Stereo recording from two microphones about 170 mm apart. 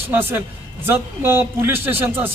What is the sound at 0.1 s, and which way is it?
A man's voice, 10° right (ahead or behind).